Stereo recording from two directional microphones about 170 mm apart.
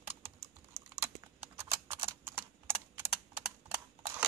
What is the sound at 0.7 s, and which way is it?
Typing, 15° right (ahead or behind).